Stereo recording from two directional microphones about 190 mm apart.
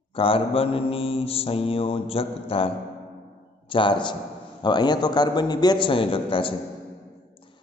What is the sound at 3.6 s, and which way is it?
A man's voice, 25° left (ahead or behind).